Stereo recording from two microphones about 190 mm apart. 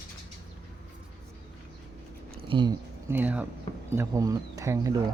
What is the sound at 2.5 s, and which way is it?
Speech, 25° right (ahead or behind).